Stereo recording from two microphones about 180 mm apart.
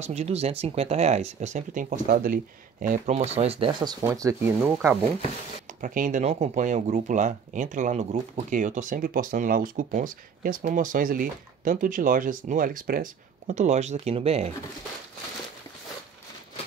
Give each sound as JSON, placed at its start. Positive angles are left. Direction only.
{"t": 0.0, "sound": "speech", "side_deg": -35}
{"t": 4.1, "sound": "speech", "side_deg": -15}
{"t": 5.7, "sound": "speech", "side_deg": -45}